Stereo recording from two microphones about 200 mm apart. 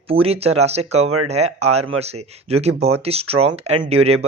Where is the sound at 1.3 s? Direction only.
30° right (ahead or behind).